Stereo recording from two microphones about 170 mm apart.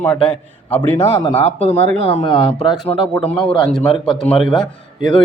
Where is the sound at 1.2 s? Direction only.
35° left (ahead or behind).